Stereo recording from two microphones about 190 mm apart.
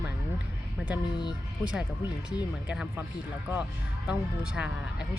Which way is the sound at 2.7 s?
5° right (ahead or behind).